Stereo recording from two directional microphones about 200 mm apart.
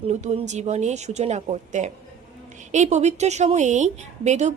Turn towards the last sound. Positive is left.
turn(degrees=-35)  # may be behind; listen again after turning